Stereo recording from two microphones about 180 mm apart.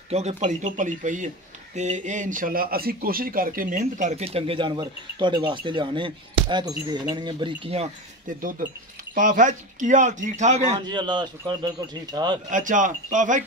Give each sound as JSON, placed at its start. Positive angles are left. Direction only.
{"t": 0.1, "sound": "speech", "side_deg": -35}
{"t": 8.3, "sound": "speech", "side_deg": -50}
{"t": 10.8, "sound": "speech", "side_deg": -25}
{"t": 12.4, "sound": "speech", "side_deg": -45}